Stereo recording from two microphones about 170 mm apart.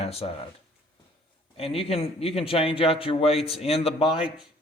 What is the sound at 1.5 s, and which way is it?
A man's voice, 35° left (ahead or behind).